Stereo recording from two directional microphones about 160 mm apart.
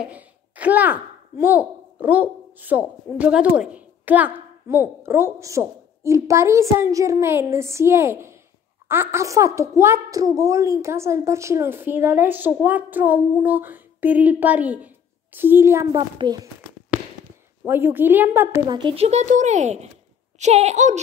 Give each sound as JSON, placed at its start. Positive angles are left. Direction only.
{"t": 0.0, "sound": "a child's voice", "side_deg": -10}
{"t": 16.0, "sound": "a child's voice", "side_deg": -30}
{"t": 16.9, "sound": "a sound", "side_deg": -10}
{"t": 17.6, "sound": "a woman's voice", "side_deg": -15}
{"t": 18.7, "sound": "speech", "side_deg": -30}